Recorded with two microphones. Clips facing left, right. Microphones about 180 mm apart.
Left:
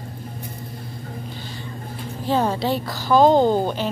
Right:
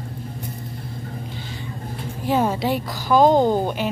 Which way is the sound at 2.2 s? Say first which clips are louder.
Even; 5° right (ahead or behind).